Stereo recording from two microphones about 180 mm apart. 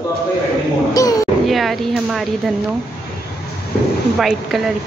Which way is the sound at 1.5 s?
Centre (ahead or behind).